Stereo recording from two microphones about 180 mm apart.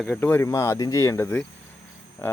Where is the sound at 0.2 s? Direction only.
10° left (ahead or behind).